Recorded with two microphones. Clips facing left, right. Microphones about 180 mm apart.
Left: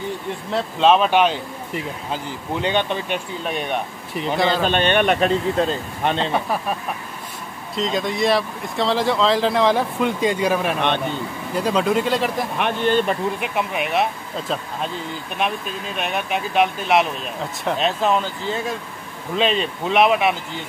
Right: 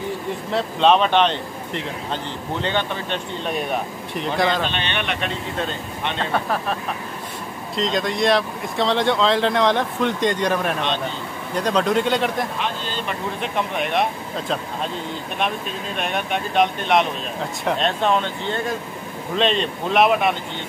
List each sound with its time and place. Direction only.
0.5 s speech: centre (ahead or behind)
2.6 s speech: 15° left (ahead or behind)
3.4 s speech: centre (ahead or behind)
4.6 s speech: 45° left (ahead or behind)
6.3 s speech: 10° left (ahead or behind)
12.5 s speech: 60° left (ahead or behind)
13.4 s speech: 5° left (ahead or behind)
15.3 s speech: centre (ahead or behind)